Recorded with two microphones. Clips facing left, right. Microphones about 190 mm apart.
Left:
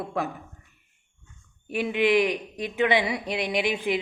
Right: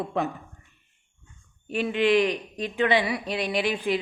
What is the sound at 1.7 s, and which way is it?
Speech, 15° left (ahead or behind).